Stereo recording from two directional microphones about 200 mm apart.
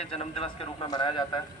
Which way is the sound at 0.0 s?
30° left (ahead or behind).